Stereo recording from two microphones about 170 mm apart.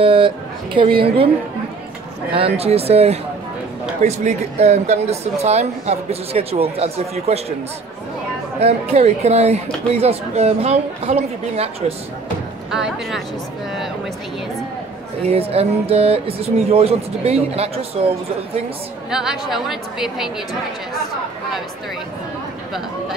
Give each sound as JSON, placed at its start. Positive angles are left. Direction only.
{"t": 0.0, "sound": "speech", "side_deg": -30}
{"t": 2.3, "sound": "speech", "side_deg": -35}
{"t": 8.5, "sound": "speech", "side_deg": -35}
{"t": 12.7, "sound": "a woman's voice", "side_deg": -5}
{"t": 15.2, "sound": "speech", "side_deg": -35}
{"t": 19.0, "sound": "a woman's voice", "side_deg": -5}